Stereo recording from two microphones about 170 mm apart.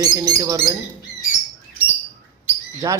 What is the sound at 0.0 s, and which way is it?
Speech, 20° right (ahead or behind).